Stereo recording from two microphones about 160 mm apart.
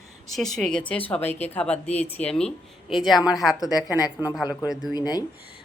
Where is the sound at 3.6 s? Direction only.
20° left (ahead or behind).